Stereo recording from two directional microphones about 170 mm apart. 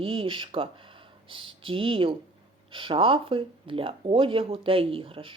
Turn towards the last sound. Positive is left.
turn(degrees=-30)  # may be behind; listen again after turning